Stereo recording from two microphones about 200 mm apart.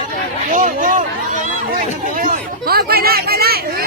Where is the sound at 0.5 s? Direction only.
40° right (ahead or behind).